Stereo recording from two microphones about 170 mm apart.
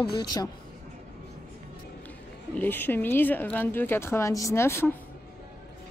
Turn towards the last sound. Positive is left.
turn(degrees=15)  # may be behind; listen again after turning